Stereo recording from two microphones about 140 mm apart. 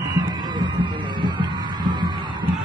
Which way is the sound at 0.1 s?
30° right (ahead or behind).